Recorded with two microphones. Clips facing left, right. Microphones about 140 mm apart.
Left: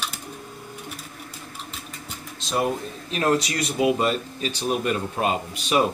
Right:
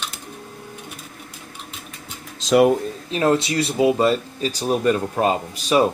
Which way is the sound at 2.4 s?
90° right.